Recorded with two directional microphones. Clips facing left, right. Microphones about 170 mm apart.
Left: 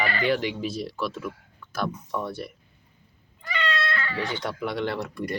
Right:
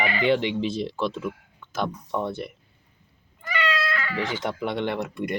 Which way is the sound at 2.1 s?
20° right (ahead or behind).